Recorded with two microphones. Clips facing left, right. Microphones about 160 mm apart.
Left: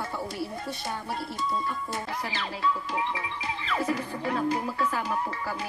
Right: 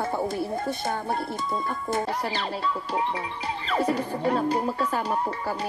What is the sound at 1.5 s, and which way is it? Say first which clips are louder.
Speech: right 7 dB; 50° right (ahead or behind).